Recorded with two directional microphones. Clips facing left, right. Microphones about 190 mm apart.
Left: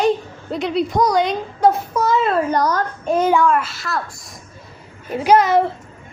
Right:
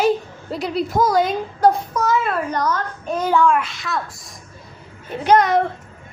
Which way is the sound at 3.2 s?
20° left (ahead or behind).